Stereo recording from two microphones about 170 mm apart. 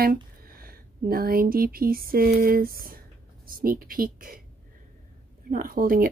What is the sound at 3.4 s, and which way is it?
Speech, 60° right (ahead or behind).